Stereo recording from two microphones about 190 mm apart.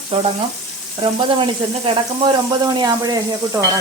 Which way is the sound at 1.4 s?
25° right (ahead or behind).